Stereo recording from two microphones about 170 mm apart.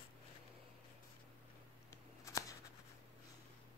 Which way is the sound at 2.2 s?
20° left (ahead or behind).